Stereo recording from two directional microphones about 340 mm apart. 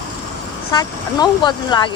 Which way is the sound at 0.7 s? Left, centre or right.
Centre.